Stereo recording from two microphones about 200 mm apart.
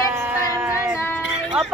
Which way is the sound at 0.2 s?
10° right (ahead or behind).